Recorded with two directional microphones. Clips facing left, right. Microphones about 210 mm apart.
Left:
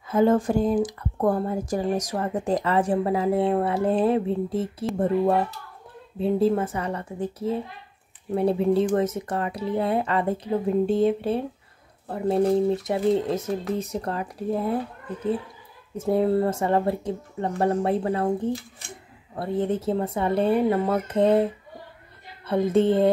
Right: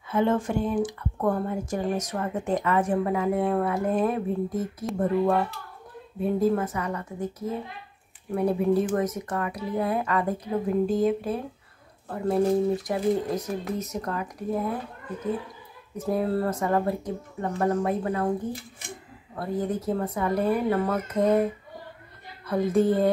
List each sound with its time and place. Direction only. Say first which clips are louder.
0.1 s speech: left 4 dB; 40° left (ahead or behind)
16.0 s speech: left 4 dB; 25° left (ahead or behind)
22.5 s speech: left 2 dB; 25° left (ahead or behind)